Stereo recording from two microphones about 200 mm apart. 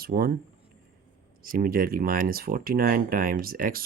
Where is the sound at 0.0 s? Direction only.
50° right (ahead or behind).